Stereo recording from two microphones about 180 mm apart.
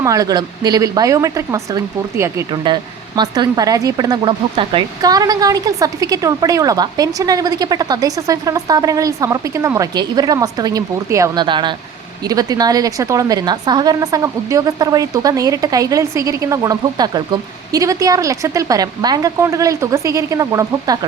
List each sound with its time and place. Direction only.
0.0 s speech: 20° right (ahead or behind)
2.5 s speech: 25° right (ahead or behind)